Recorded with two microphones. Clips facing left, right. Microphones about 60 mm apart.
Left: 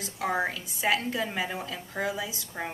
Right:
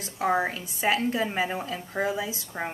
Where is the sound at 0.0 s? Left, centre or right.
Right.